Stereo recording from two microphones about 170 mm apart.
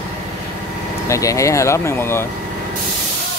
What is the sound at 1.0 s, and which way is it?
Speech, 20° left (ahead or behind).